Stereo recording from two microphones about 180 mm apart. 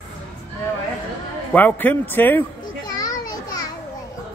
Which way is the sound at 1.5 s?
10° left (ahead or behind).